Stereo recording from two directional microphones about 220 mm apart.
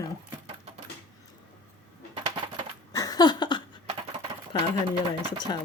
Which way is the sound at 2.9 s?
15° left (ahead or behind).